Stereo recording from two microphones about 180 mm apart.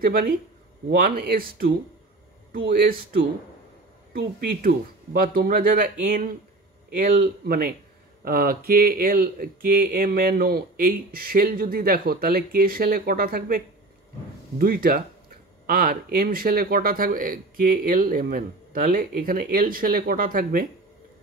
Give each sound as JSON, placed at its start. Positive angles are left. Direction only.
{"t": 0.0, "sound": "speech", "side_deg": -55}
{"t": 2.7, "sound": "speech", "side_deg": -55}
{"t": 14.6, "sound": "speech", "side_deg": -55}